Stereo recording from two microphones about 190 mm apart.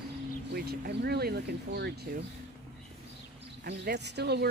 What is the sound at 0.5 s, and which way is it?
Speech, 55° right (ahead or behind).